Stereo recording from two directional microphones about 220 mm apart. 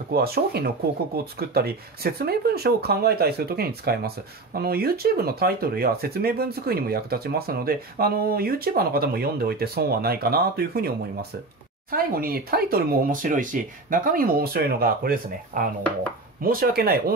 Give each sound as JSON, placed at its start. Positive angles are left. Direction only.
{"t": 0.1, "sound": "speech", "side_deg": -45}
{"t": 11.9, "sound": "speech", "side_deg": -40}